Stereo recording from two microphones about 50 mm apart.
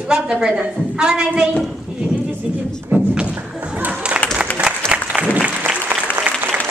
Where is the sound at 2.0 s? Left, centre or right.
Right.